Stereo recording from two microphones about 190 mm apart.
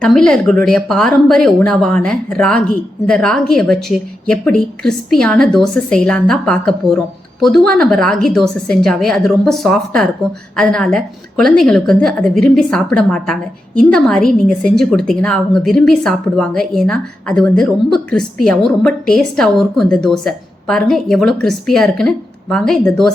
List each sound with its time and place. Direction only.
0.0 s a woman's voice: 5° left (ahead or behind)